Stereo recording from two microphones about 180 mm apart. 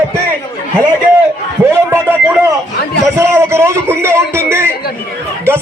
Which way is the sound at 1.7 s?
10° right (ahead or behind).